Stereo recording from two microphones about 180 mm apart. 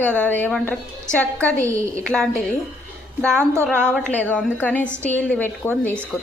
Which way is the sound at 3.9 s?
5° left (ahead or behind).